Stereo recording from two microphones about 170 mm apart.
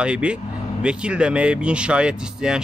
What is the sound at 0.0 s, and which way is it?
Speech, 5° right (ahead or behind).